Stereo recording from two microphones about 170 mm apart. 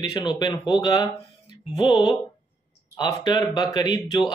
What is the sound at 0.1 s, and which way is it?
Speech, 25° left (ahead or behind).